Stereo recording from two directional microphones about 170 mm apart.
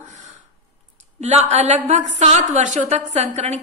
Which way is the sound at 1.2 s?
40° right (ahead or behind).